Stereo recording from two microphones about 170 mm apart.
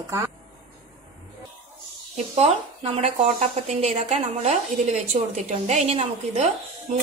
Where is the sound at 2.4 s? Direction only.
40° right (ahead or behind).